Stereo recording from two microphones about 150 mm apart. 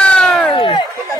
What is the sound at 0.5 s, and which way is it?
Chatter, 35° left (ahead or behind).